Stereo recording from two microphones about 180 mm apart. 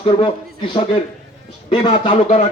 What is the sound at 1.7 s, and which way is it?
Speech, 30° left (ahead or behind).